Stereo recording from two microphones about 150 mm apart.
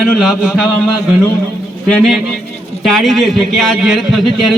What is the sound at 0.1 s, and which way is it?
Speech, centre (ahead or behind).